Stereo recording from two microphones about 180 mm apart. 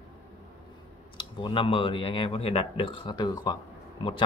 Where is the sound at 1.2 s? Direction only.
25° left (ahead or behind).